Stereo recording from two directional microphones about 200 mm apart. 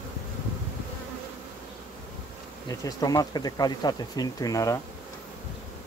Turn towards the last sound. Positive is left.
turn(degrees=15)  # may be behind; listen again after turning